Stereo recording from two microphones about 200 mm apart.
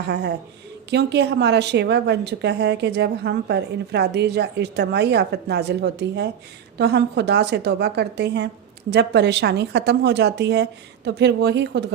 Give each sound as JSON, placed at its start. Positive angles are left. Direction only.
{"t": 0.1, "sound": "a woman's voice", "side_deg": -55}